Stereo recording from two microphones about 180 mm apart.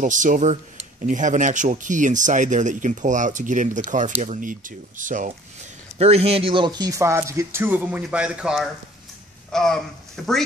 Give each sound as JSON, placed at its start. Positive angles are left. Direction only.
{"t": 0.0, "sound": "speech", "side_deg": -45}
{"t": 5.9, "sound": "speech", "side_deg": -35}